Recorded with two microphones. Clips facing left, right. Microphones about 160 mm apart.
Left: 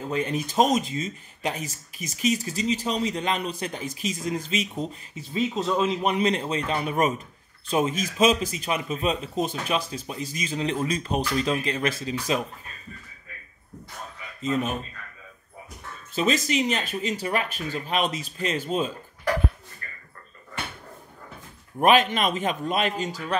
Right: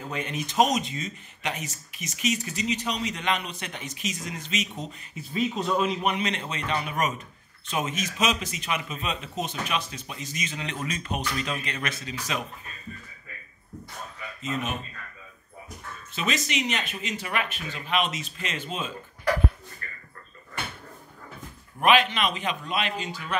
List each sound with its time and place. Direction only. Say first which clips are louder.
0.1 s a man's voice: left 6 dB; 35° left (ahead or behind)
14.4 s speech: left 5 dB; 35° left (ahead or behind)
16.2 s speech: left 6 dB; 35° left (ahead or behind)
21.7 s a man's voice: left 2 dB; 45° left (ahead or behind)